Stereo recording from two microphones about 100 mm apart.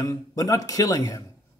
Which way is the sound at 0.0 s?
30° left (ahead or behind).